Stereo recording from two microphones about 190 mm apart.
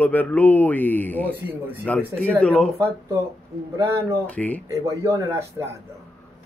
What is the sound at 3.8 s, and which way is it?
Speech, 15° right (ahead or behind).